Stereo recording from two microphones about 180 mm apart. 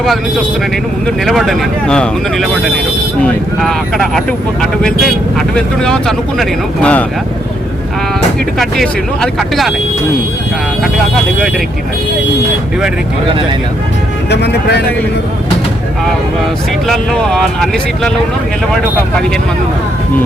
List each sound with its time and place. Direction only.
1.0 s speech: centre (ahead or behind)
8.5 s speech: centre (ahead or behind)
14.3 s speech: 70° left (ahead or behind)
16.8 s speech: centre (ahead or behind)